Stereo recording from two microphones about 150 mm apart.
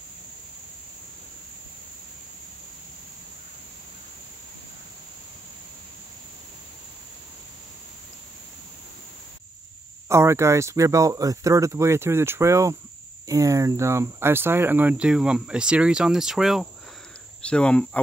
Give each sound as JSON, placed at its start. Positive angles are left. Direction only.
{"t": 10.0, "sound": "speech", "side_deg": -20}